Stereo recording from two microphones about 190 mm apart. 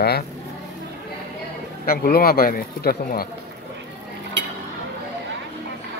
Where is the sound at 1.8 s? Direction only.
50° left (ahead or behind).